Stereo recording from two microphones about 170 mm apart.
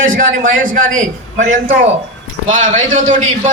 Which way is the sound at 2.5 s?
45° right (ahead or behind).